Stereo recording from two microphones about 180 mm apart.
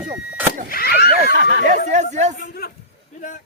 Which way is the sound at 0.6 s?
55° left (ahead or behind).